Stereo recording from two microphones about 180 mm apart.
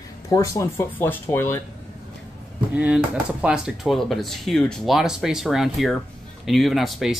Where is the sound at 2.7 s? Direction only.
10° right (ahead or behind).